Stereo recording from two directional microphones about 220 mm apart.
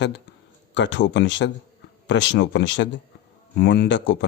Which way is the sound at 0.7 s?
55° left (ahead or behind).